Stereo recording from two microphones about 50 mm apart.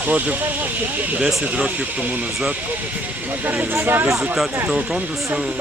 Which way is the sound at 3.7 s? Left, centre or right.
Right.